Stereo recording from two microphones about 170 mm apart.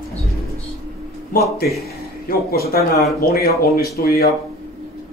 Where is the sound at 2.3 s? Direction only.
60° left (ahead or behind).